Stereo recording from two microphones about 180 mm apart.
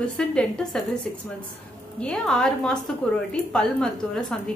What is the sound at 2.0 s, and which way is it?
A woman's voice, 5° left (ahead or behind).